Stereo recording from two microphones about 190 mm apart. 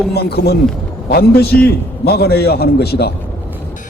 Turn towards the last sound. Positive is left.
turn(degrees=55)  # may be behind; listen again after turning